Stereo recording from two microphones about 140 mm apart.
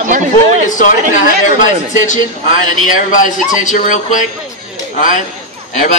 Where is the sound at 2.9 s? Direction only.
70° left (ahead or behind).